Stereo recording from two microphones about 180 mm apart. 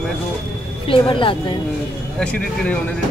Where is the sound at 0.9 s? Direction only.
30° left (ahead or behind).